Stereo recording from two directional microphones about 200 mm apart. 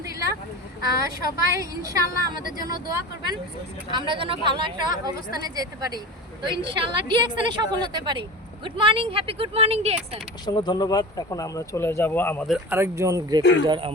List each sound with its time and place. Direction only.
0.8 s speech: 15° right (ahead or behind)
2.4 s speech: 45° left (ahead or behind)
3.9 s speech: 25° right (ahead or behind)
10.4 s speech: 20° left (ahead or behind)
12.5 s speech: 10° right (ahead or behind)
13.4 s speech: 60° left (ahead or behind)
13.7 s speech: 25° right (ahead or behind)